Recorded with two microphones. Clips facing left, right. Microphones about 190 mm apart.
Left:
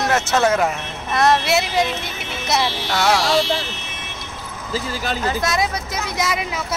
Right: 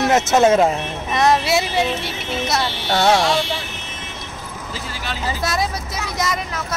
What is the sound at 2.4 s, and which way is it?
Speech, 5° left (ahead or behind).